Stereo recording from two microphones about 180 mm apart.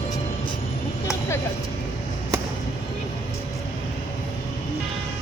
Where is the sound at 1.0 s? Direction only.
15° left (ahead or behind).